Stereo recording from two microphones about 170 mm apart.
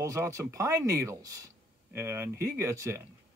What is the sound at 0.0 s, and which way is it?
Speech, 20° right (ahead or behind).